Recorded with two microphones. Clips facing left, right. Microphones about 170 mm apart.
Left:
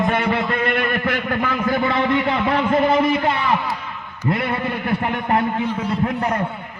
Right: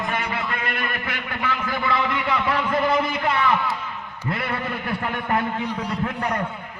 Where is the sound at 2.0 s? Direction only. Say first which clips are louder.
Left 5 dB; 25° left (ahead or behind).